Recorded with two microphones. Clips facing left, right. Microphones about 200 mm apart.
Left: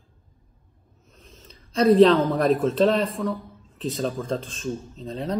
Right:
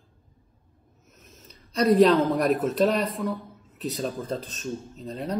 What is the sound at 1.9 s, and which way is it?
Speech, 10° right (ahead or behind).